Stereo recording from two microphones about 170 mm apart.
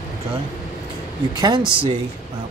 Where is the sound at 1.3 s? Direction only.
25° right (ahead or behind).